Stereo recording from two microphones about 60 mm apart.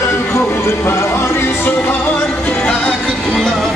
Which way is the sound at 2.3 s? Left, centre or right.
Centre.